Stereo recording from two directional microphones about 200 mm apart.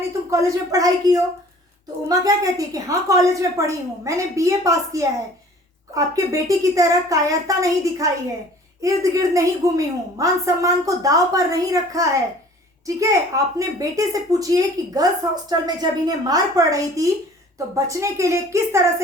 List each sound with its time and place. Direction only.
0.3 s a woman's voice: 15° right (ahead or behind)